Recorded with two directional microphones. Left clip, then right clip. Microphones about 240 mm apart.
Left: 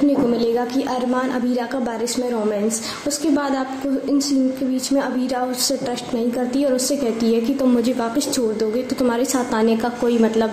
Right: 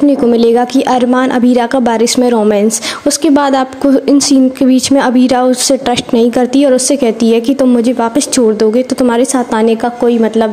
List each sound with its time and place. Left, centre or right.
0.3 s a woman's voice: right